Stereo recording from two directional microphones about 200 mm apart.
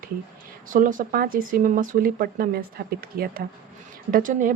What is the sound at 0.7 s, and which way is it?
Speech, 40° right (ahead or behind).